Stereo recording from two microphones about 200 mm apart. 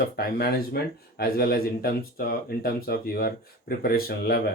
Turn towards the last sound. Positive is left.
turn(degrees=50)  # may be behind; listen again after turning